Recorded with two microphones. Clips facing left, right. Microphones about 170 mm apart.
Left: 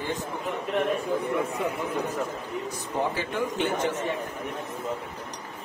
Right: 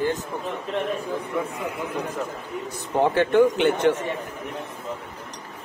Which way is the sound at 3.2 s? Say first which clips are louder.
Right 10 dB; 70° right (ahead or behind).